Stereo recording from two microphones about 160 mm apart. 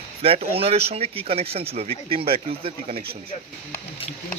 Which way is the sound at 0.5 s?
40° right (ahead or behind).